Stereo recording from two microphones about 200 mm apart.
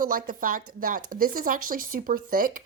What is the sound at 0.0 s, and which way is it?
A woman's voice, 45° right (ahead or behind).